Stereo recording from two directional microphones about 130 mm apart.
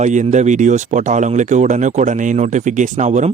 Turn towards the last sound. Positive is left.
turn(degrees=-60)  # may be behind; listen again after turning